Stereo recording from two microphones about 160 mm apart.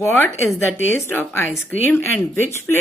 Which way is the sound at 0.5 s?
15° left (ahead or behind).